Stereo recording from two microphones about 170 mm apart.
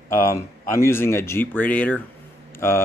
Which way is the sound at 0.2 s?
15° left (ahead or behind).